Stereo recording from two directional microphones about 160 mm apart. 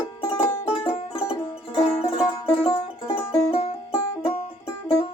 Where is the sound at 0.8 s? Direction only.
35° left (ahead or behind).